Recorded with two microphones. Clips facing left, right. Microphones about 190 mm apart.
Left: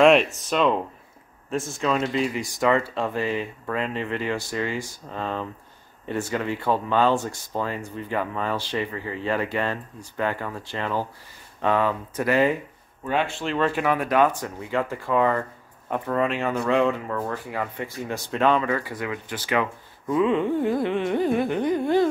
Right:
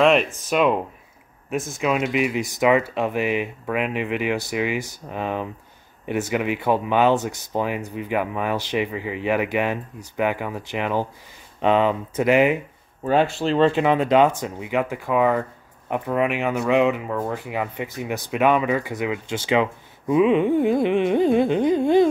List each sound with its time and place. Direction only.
0.0 s speech: centre (ahead or behind); by 12.5 s 20° right (ahead or behind)
13.0 s speech: 40° right (ahead or behind); by 22.1 s 20° right (ahead or behind)